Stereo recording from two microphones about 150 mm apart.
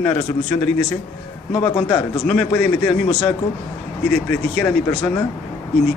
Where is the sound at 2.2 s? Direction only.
5° left (ahead or behind).